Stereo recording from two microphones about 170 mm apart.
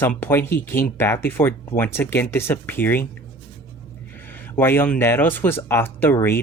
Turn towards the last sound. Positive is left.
turn(degrees=15)  # may be behind; listen again after turning